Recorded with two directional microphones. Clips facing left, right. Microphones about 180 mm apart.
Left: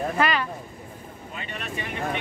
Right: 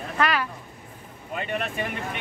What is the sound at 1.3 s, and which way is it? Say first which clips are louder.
Speech: right 6 dB; 55° right (ahead or behind).